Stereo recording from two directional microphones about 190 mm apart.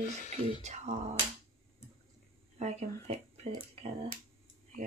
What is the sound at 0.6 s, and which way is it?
Speech, 35° right (ahead or behind).